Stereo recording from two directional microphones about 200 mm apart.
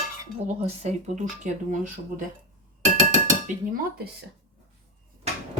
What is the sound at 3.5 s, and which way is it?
Dishes, 45° right (ahead or behind).